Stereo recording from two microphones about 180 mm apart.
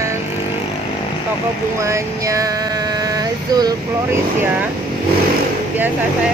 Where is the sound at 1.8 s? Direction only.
15° right (ahead or behind).